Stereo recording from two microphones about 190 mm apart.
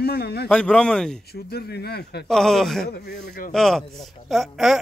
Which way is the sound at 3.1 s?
40° left (ahead or behind).